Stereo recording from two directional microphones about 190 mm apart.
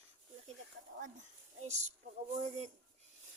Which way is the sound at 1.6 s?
35° right (ahead or behind).